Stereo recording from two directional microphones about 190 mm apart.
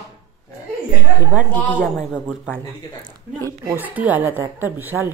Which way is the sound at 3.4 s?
10° right (ahead or behind).